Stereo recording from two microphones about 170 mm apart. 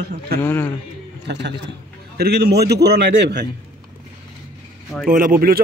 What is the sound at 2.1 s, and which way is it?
A man's voice, 70° right (ahead or behind).